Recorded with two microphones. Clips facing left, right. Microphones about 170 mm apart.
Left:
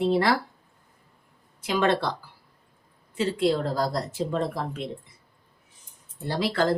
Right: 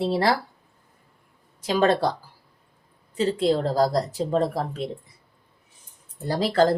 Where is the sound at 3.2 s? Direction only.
40° right (ahead or behind).